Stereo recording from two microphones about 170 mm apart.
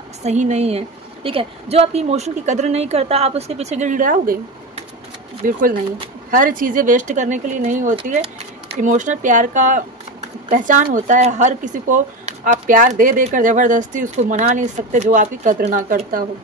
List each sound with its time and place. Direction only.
0.2 s a woman's voice: 40° right (ahead or behind)